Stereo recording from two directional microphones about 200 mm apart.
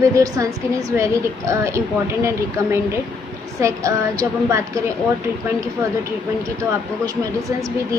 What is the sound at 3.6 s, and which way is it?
Speech, 15° right (ahead or behind).